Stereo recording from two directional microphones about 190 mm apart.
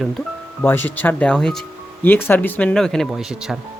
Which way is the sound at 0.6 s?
10° left (ahead or behind).